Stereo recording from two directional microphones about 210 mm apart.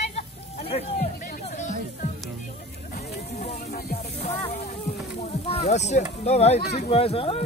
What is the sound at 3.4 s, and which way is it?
Music, 35° left (ahead or behind).